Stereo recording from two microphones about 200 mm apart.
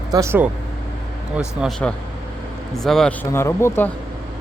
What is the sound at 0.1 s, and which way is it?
Speech, 15° right (ahead or behind).